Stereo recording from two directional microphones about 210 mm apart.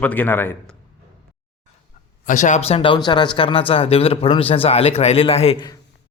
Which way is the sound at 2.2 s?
35° left (ahead or behind).